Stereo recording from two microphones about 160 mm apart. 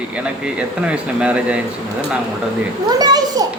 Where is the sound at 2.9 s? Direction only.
25° right (ahead or behind).